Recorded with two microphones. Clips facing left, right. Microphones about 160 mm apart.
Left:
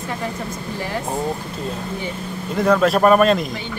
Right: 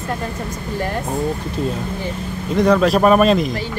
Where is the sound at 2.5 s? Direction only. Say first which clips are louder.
Right 2 dB; centre (ahead or behind).